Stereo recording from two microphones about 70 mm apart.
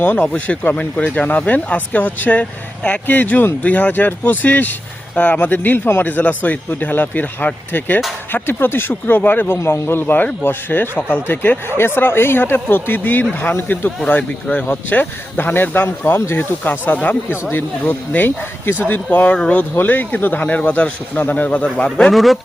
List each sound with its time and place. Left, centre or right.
0.0 s speech: left
9.6 s speech: left; by 22.1 s centre
22.1 s a man's voice: centre